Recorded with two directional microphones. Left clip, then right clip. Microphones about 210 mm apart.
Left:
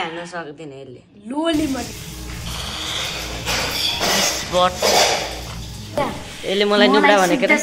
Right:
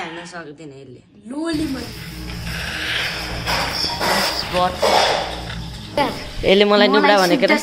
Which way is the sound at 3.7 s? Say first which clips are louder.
Left 2 dB; 10° right (ahead or behind).